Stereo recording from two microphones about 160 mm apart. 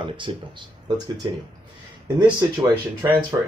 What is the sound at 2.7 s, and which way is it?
Speech, 15° right (ahead or behind).